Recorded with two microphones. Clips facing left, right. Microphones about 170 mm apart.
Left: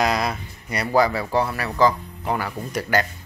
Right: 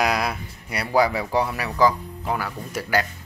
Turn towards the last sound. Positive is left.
turn(degrees=-5)  # may be behind; listen again after turning